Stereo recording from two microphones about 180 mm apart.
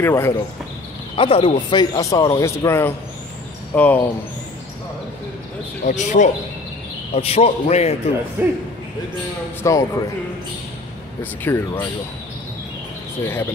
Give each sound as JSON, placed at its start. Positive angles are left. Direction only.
{"t": 0.0, "sound": "speech", "side_deg": 15}
{"t": 1.1, "sound": "a man's voice", "side_deg": 30}
{"t": 5.9, "sound": "a man's voice", "side_deg": 40}
{"t": 8.4, "sound": "speech", "side_deg": -10}
{"t": 9.6, "sound": "speech", "side_deg": 20}
{"t": 11.4, "sound": "speech", "side_deg": 10}
{"t": 13.2, "sound": "speech", "side_deg": 15}